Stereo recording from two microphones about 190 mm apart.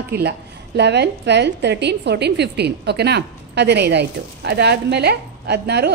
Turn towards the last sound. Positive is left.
turn(degrees=-60)  # may be behind; listen again after turning